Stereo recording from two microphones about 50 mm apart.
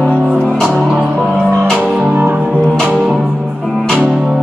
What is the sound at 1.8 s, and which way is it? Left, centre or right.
Music, centre.